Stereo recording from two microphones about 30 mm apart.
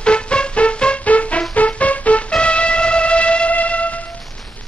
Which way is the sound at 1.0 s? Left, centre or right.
Left.